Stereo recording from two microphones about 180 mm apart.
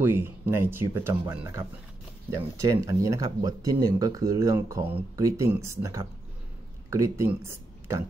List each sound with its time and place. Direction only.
0.0 s speech: 15° right (ahead or behind)